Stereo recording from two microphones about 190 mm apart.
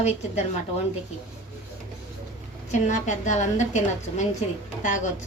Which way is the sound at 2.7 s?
40° left (ahead or behind).